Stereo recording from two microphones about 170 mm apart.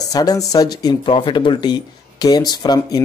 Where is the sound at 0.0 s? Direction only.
20° left (ahead or behind).